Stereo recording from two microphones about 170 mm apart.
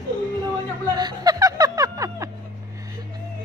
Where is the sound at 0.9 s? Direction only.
25° right (ahead or behind).